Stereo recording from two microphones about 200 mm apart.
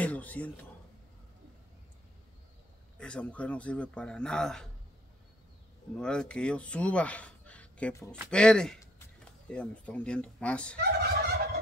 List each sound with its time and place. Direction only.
0.0 s a sound: 5° left (ahead or behind)
3.0 s a man's voice: 5° left (ahead or behind)
5.9 s a man's voice: 5° left (ahead or behind)
10.8 s fowl: 55° right (ahead or behind)